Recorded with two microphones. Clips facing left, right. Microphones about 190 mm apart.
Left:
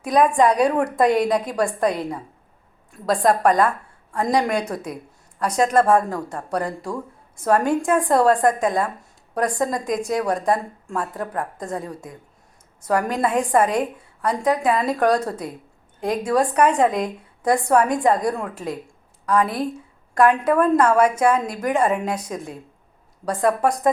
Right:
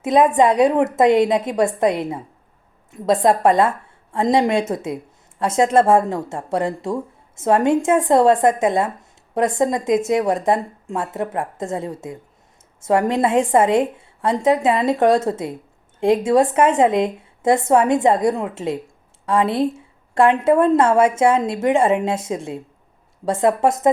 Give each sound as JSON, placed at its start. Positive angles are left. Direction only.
{"t": 0.0, "sound": "speech", "side_deg": -25}